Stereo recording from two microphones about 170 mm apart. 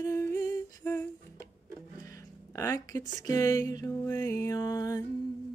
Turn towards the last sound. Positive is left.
turn(degrees=20)  # may be behind; listen again after turning